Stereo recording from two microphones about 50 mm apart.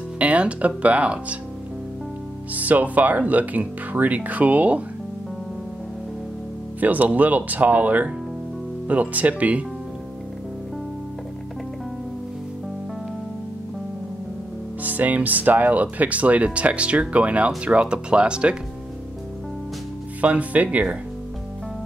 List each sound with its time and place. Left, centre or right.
0.2 s speech: right
2.5 s speech: right
6.8 s speech: right
14.8 s speech: right
20.2 s speech: right